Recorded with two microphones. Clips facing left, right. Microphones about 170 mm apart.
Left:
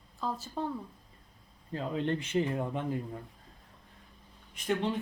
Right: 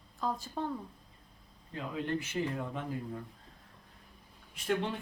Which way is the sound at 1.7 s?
30° left (ahead or behind).